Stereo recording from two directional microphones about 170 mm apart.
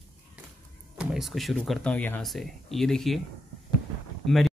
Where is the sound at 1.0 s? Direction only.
Centre (ahead or behind).